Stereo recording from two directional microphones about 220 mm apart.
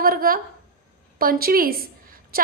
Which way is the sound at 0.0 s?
40° right (ahead or behind).